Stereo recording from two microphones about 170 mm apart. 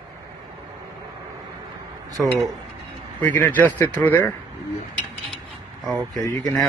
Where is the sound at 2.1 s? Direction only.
Centre (ahead or behind).